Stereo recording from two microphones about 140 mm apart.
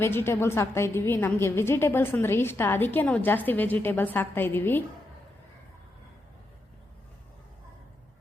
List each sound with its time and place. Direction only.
0.0 s a woman's voice: 15° left (ahead or behind)